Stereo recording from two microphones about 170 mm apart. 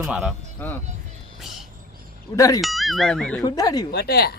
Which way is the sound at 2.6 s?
Centre (ahead or behind).